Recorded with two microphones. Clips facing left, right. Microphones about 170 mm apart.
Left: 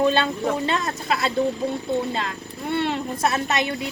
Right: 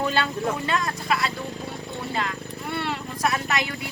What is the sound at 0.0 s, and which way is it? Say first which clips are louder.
Speech: left 4 dB; 25° left (ahead or behind).